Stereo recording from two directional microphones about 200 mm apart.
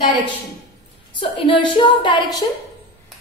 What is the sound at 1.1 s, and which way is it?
A woman's voice, 25° left (ahead or behind).